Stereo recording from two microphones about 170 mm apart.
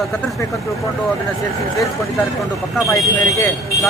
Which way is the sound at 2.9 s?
20° left (ahead or behind).